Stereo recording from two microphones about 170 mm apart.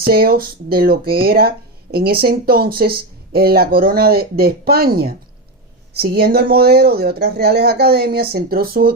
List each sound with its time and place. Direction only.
0.0 s speech: 60° right (ahead or behind)